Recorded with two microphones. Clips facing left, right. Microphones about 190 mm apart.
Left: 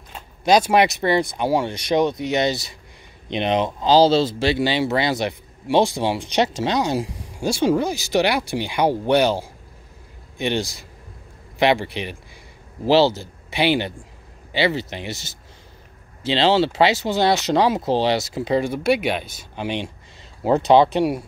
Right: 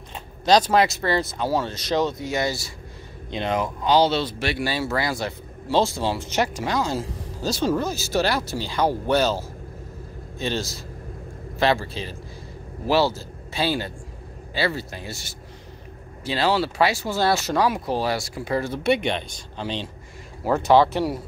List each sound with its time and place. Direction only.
0.5 s a man's voice: 10° left (ahead or behind)
15.0 s speech: 20° left (ahead or behind)
18.8 s speech: centre (ahead or behind); by 21.2 s 20° left (ahead or behind)